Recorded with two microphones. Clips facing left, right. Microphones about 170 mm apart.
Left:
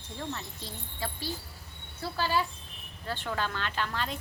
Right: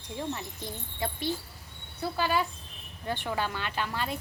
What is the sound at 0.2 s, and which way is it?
Speech, 15° right (ahead or behind).